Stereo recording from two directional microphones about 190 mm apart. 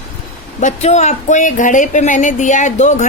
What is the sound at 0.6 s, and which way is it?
A woman's voice, 35° left (ahead or behind).